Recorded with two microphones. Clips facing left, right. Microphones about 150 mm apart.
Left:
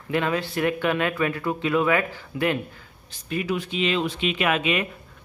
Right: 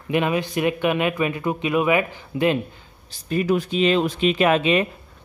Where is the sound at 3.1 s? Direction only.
40° right (ahead or behind).